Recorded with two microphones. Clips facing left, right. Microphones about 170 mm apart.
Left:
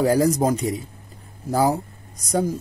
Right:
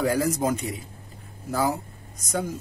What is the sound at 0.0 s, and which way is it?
A man's voice, 35° left (ahead or behind).